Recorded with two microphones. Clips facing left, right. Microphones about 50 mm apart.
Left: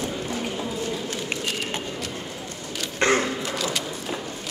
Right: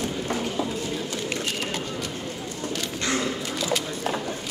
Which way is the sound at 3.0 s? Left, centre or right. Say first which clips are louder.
Left 8 dB; left.